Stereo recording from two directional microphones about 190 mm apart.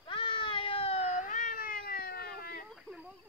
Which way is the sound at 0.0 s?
25° left (ahead or behind).